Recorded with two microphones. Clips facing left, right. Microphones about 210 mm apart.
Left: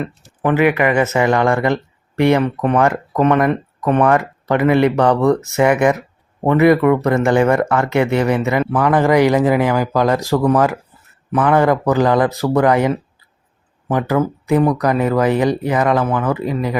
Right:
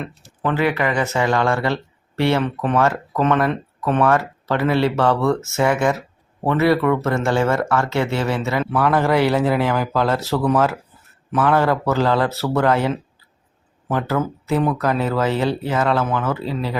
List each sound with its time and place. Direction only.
0.4 s speech: 15° left (ahead or behind)